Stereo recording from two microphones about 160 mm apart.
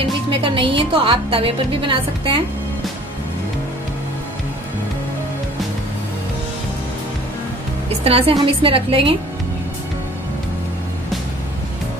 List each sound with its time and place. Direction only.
0.4 s a woman's voice: 35° right (ahead or behind)
8.0 s a woman's voice: 35° right (ahead or behind)